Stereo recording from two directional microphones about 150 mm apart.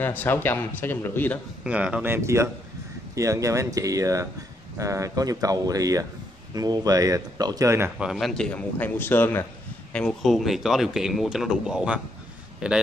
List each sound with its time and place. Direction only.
0.0 s a man's voice: 15° left (ahead or behind)
1.6 s speech: 10° right (ahead or behind)
8.0 s a man's voice: centre (ahead or behind); by 9.5 s 15° left (ahead or behind)
9.9 s speech: 5° left (ahead or behind)